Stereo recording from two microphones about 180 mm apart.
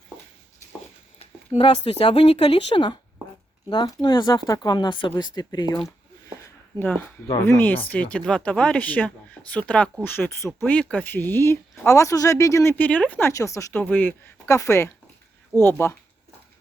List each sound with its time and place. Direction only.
1.2 s speech: 30° left (ahead or behind)
6.7 s speech: 10° left (ahead or behind)